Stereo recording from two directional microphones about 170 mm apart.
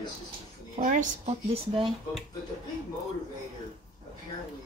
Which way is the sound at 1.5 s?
30° right (ahead or behind).